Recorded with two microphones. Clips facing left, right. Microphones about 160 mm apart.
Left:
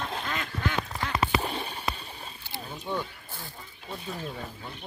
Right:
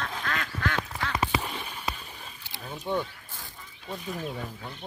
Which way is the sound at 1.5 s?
35° left (ahead or behind).